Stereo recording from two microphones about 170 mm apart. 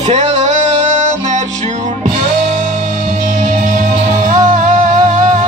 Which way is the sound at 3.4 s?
50° right (ahead or behind).